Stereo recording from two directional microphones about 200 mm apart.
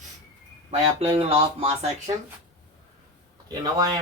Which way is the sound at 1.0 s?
25° right (ahead or behind).